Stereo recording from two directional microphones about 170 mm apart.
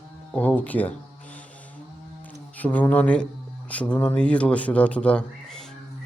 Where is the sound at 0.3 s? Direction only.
10° left (ahead or behind).